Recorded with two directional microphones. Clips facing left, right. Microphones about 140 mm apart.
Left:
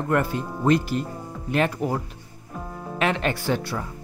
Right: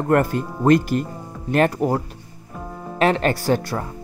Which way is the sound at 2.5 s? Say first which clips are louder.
Right 1 dB; centre (ahead or behind).